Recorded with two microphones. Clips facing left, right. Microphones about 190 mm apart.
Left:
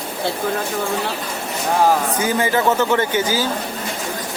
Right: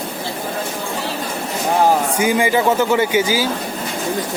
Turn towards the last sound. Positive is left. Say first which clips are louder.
# right 2 dB
turn(degrees=-10)  # may be behind; listen again after turning